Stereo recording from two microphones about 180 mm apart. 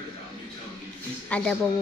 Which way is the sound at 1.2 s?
5° left (ahead or behind).